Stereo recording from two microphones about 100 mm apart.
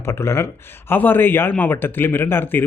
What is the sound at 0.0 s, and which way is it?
Speech, 25° left (ahead or behind).